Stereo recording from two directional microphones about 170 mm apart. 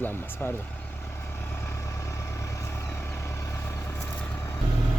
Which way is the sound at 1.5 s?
15° left (ahead or behind).